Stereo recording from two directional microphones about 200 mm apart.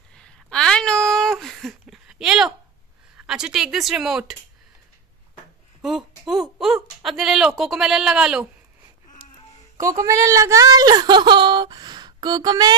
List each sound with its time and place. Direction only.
0.1 s a sound: 5° left (ahead or behind)
3.3 s speech: 5° right (ahead or behind)
5.8 s speech: centre (ahead or behind)
9.8 s speech: 15° right (ahead or behind)